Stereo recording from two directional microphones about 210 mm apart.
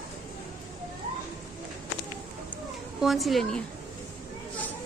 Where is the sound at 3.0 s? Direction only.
Centre (ahead or behind).